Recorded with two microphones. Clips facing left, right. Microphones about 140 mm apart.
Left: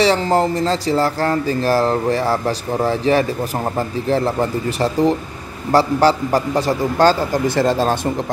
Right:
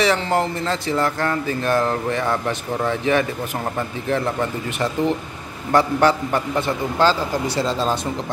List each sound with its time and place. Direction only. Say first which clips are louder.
0.0 s speech: left 4 dB; 30° left (ahead or behind); by 8.1 s 55° left (ahead or behind)